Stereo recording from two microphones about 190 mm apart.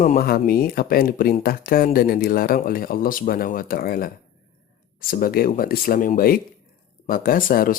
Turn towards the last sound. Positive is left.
turn(degrees=45)  # may be behind; listen again after turning